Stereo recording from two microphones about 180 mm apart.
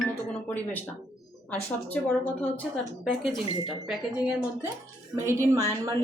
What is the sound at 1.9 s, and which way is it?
A woman's voice, 10° left (ahead or behind).